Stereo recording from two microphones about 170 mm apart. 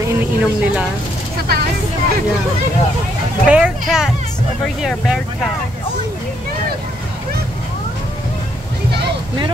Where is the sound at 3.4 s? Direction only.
5° right (ahead or behind).